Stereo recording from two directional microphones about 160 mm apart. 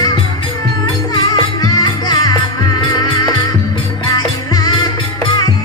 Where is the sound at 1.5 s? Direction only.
25° left (ahead or behind).